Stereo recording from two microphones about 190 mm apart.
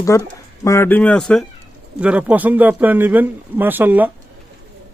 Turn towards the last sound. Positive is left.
turn(degrees=-10)  # may be behind; listen again after turning